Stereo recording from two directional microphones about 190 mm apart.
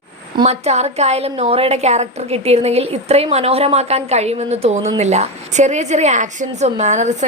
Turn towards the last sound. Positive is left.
turn(degrees=-40)  # may be behind; listen again after turning